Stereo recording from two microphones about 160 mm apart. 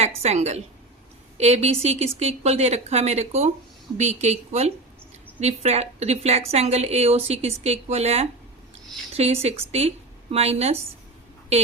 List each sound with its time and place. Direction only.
0.2 s a woman's voice: 45° right (ahead or behind)